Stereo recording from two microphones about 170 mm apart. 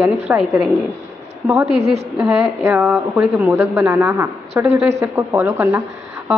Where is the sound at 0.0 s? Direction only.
10° right (ahead or behind).